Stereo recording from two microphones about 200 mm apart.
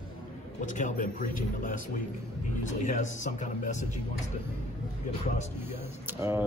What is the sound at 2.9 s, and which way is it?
Speech, 35° left (ahead or behind).